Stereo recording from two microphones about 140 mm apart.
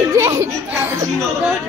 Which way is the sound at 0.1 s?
20° right (ahead or behind).